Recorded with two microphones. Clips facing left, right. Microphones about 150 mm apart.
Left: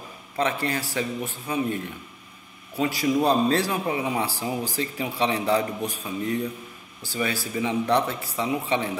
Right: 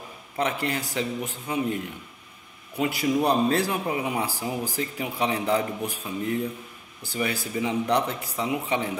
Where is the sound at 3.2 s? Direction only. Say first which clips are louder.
Left 1 dB; 15° right (ahead or behind).